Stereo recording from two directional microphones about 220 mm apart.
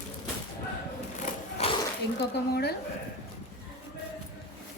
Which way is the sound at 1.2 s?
25° left (ahead or behind).